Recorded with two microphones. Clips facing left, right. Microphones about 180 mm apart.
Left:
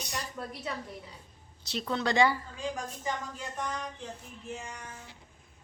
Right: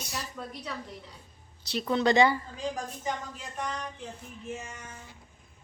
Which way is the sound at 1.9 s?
20° right (ahead or behind).